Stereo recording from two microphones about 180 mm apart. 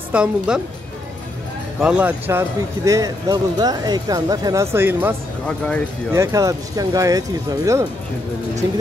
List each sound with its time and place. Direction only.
0.1 s a woman's voice: 5° right (ahead or behind)
1.8 s speech: 5° right (ahead or behind)
6.1 s speech: 15° right (ahead or behind)